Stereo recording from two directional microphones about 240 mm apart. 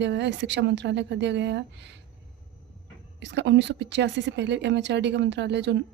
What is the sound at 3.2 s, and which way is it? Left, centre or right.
A woman's voice, right.